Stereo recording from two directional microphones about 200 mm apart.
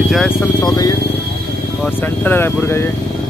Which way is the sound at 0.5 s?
20° left (ahead or behind).